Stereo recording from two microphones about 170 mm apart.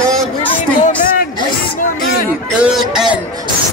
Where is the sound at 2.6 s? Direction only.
Centre (ahead or behind).